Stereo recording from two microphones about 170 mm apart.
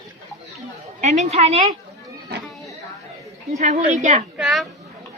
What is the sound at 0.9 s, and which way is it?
Speech, 45° right (ahead or behind).